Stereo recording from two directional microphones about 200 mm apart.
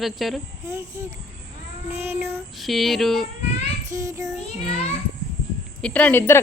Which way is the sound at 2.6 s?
Centre (ahead or behind).